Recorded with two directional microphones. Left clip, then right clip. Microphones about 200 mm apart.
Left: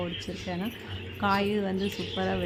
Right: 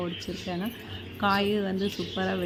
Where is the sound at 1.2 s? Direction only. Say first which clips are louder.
Right 1 dB; 5° right (ahead or behind).